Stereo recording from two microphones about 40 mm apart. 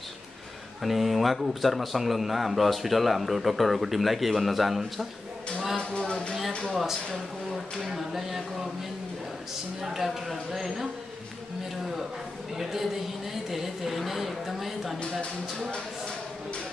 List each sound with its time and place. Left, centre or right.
0.8 s speech: centre
5.8 s speech: left
6.7 s speech: centre
9.8 s speech: centre
13.3 s speech: centre
15.0 s speech: left